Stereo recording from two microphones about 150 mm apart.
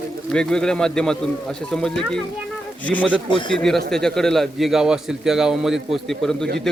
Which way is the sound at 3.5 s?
Centre (ahead or behind).